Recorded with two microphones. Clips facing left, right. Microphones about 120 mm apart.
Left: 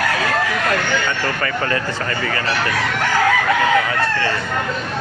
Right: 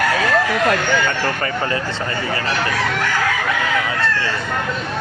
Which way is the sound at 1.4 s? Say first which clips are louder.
Even; 25° right (ahead or behind).